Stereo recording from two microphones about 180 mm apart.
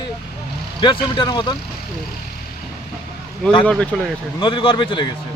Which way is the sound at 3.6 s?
5° left (ahead or behind).